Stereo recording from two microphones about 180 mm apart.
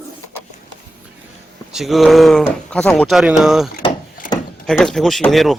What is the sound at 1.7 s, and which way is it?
Speech, centre (ahead or behind).